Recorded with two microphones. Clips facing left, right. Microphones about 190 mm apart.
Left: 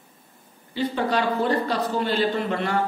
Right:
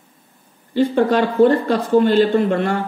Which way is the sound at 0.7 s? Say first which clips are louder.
Right 9 dB; 50° right (ahead or behind).